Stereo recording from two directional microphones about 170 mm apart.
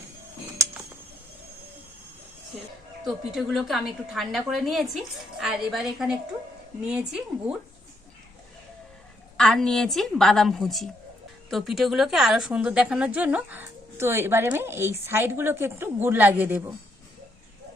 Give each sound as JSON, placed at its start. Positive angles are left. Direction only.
{"t": 3.0, "sound": "a woman's voice", "side_deg": 0}
{"t": 9.4, "sound": "a woman's voice", "side_deg": 5}